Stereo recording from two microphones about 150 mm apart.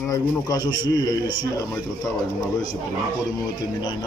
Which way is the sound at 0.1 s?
25° left (ahead or behind).